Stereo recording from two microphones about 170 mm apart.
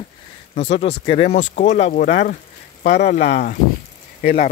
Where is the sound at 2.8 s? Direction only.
75° left (ahead or behind).